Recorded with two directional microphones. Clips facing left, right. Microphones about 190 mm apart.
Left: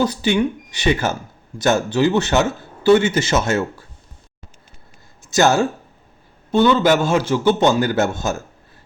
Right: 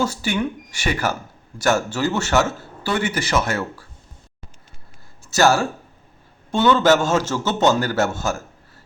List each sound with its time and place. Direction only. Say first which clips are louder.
0.0 s speech: left 4 dB; 20° left (ahead or behind)
5.3 s a man's voice: left 2 dB; 20° left (ahead or behind)